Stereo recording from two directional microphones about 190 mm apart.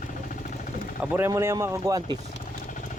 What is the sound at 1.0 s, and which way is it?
Speech, 10° right (ahead or behind).